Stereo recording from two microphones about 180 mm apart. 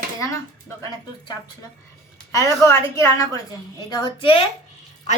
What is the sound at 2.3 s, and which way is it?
A woman's voice, 15° left (ahead or behind).